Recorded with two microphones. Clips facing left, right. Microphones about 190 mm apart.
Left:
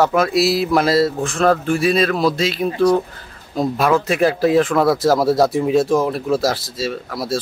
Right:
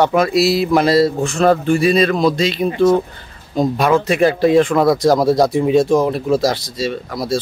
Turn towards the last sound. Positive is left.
turn(degrees=0)  # may be behind; listen again after turning